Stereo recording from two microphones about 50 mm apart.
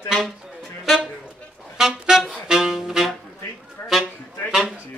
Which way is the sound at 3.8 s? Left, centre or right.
Left.